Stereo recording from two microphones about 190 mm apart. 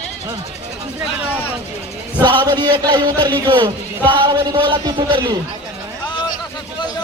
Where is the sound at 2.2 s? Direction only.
25° right (ahead or behind).